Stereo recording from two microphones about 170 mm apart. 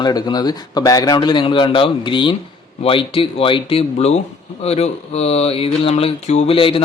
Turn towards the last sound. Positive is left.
turn(degrees=35)  # may be behind; listen again after turning